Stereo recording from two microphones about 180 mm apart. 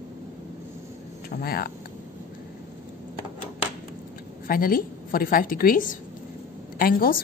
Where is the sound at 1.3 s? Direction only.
60° left (ahead or behind).